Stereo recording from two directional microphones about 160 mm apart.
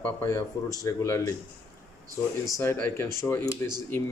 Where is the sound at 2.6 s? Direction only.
15° left (ahead or behind).